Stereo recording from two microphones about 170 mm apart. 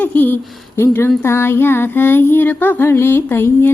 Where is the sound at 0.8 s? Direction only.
15° left (ahead or behind).